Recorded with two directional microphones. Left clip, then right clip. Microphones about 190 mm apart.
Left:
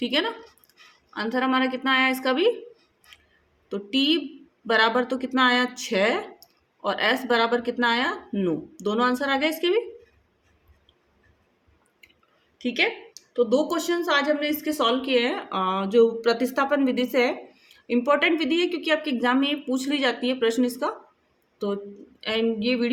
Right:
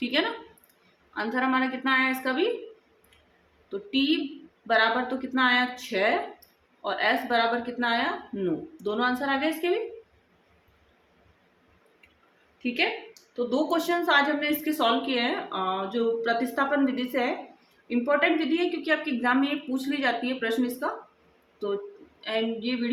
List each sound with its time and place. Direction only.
0.0 s a woman's voice: 40° left (ahead or behind)
3.7 s a woman's voice: 45° left (ahead or behind)
13.3 s a woman's voice: 45° left (ahead or behind)
22.2 s a woman's voice: 50° left (ahead or behind)